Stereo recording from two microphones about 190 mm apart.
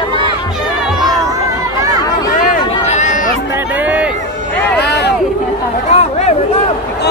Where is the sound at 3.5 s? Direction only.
10° right (ahead or behind).